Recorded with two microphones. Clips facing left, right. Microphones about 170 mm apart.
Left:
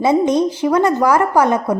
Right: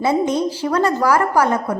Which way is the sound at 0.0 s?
20° left (ahead or behind).